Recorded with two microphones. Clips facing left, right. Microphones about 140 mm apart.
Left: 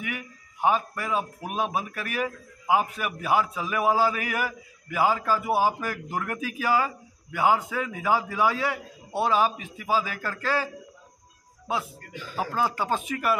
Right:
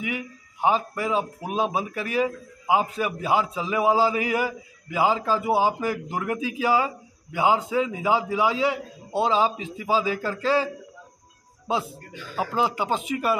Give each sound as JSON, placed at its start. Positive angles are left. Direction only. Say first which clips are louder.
{"t": 0.0, "sound": "a man's voice", "louder": "right 4 dB", "side_deg": -20}